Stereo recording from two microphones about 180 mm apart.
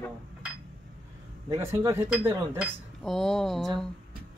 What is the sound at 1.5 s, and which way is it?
Speech, 15° right (ahead or behind).